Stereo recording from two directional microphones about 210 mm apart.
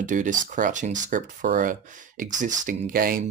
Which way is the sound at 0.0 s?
40° right (ahead or behind).